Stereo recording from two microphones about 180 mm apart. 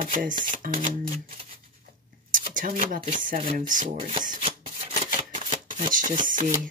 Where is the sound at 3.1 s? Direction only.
50° right (ahead or behind).